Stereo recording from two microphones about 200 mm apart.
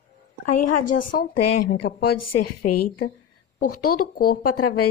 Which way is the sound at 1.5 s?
55° left (ahead or behind).